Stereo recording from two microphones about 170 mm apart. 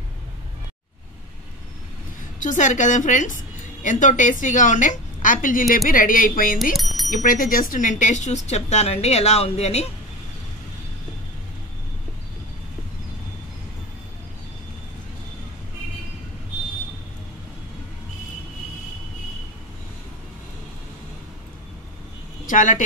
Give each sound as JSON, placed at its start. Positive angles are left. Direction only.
{"t": 2.4, "sound": "a woman's voice", "side_deg": 45}
{"t": 6.7, "sound": "speech", "side_deg": 0}
{"t": 7.1, "sound": "speech", "side_deg": 50}
{"t": 22.5, "sound": "a woman's voice", "side_deg": 50}